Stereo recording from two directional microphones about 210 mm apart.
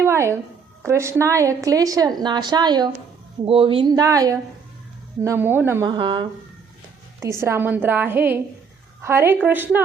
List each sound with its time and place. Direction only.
0.0 s a sound: 15° right (ahead or behind)
0.8 s a woman's voice: 15° right (ahead or behind)
5.9 s a woman's voice: 25° right (ahead or behind)